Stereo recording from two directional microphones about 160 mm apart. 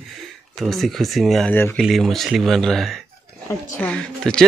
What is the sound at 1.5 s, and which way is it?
Speech, 10° left (ahead or behind).